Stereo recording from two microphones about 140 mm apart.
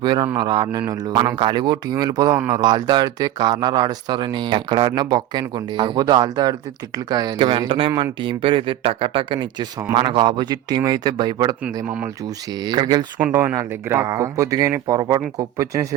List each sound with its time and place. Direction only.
0.0 s speech: 35° right (ahead or behind)
7.3 s speech: 40° right (ahead or behind)
11.6 s speech: 10° right (ahead or behind)
12.6 s speech: 30° right (ahead or behind)